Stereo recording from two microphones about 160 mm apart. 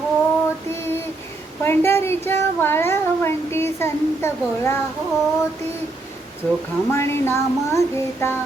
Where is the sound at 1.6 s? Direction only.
15° left (ahead or behind).